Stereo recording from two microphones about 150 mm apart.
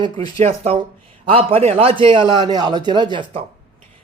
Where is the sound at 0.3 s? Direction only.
45° right (ahead or behind).